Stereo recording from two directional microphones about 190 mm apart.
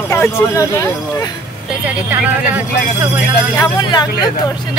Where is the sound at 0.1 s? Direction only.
15° left (ahead or behind).